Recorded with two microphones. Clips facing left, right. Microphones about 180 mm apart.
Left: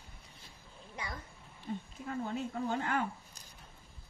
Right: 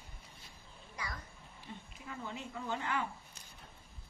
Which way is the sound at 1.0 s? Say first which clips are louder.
Left 1 dB; 25° left (ahead or behind).